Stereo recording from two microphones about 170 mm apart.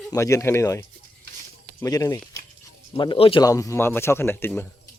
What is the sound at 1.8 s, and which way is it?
Speech, 20° left (ahead or behind).